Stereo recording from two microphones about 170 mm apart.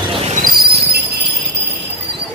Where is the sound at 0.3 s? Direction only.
60° right (ahead or behind).